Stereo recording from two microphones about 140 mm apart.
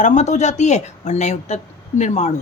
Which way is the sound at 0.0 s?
60° left (ahead or behind).